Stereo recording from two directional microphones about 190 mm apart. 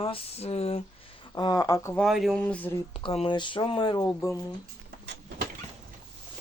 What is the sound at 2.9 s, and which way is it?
Speech, 30° left (ahead or behind).